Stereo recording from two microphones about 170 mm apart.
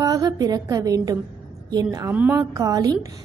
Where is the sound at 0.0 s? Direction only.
20° right (ahead or behind).